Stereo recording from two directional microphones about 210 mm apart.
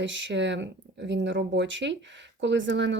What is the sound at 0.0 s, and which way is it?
Speech, 60° right (ahead or behind).